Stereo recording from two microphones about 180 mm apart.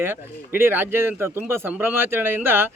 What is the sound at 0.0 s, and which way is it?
Speech, 10° right (ahead or behind).